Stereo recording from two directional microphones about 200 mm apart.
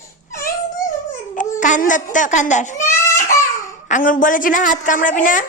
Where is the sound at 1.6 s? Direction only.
40° left (ahead or behind).